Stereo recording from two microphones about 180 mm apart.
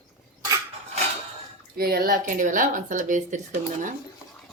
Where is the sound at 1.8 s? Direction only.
55° right (ahead or behind).